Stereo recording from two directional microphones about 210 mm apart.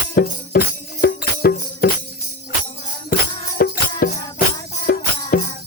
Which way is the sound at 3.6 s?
45° left (ahead or behind).